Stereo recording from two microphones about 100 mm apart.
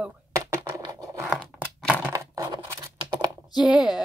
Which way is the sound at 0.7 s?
35° right (ahead or behind).